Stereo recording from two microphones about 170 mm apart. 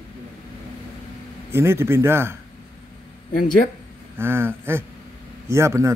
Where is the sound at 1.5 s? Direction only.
15° right (ahead or behind).